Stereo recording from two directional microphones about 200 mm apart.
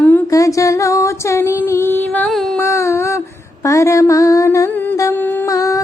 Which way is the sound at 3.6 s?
15° left (ahead or behind).